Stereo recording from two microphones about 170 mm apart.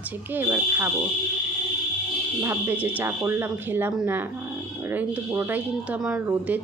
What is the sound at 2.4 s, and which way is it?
Speech, 15° right (ahead or behind).